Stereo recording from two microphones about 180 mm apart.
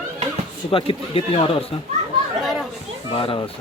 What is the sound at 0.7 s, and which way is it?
A man's voice, 30° left (ahead or behind).